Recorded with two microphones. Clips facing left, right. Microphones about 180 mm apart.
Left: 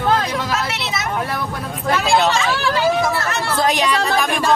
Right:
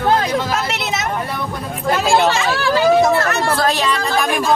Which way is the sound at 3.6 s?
15° left (ahead or behind).